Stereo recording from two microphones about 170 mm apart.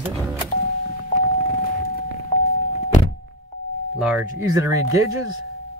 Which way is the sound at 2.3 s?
45° left (ahead or behind).